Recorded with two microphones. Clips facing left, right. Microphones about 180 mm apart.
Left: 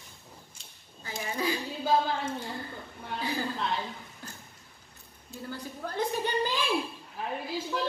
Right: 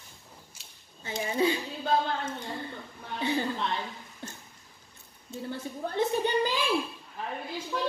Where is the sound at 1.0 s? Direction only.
25° right (ahead or behind).